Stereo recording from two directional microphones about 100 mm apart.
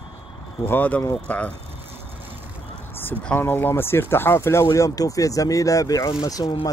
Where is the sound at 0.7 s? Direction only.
20° left (ahead or behind).